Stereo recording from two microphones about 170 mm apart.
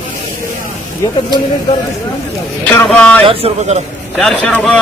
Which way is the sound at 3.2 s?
35° right (ahead or behind).